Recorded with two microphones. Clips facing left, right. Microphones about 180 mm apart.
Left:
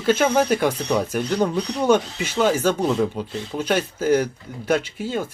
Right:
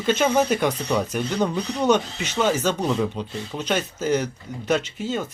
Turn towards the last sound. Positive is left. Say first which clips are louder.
# left 1 dB
turn(degrees=10)  # may be behind; listen again after turning